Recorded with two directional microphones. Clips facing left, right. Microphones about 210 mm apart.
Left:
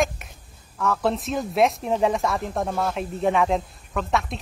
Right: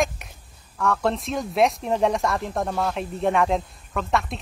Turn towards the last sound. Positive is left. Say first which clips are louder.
# even
turn(degrees=0)  # may be behind; listen again after turning